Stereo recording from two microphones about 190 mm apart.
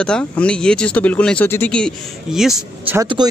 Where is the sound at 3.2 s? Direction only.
25° right (ahead or behind).